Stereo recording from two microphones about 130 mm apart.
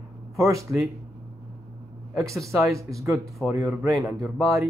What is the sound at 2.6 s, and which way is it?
A man's voice, 25° right (ahead or behind).